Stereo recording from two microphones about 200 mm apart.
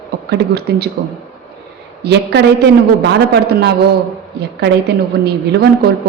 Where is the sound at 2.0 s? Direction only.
55° right (ahead or behind).